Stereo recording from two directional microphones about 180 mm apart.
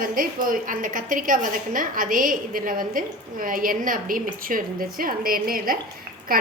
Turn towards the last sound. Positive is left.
turn(degrees=-55)  # may be behind; listen again after turning